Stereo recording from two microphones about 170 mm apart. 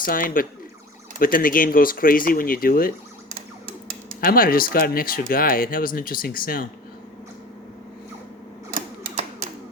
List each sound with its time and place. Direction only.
0.0 s speech: 55° left (ahead or behind)
4.2 s speech: 60° left (ahead or behind)